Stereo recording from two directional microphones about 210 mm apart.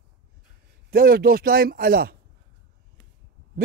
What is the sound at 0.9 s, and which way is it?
Speech, 45° right (ahead or behind).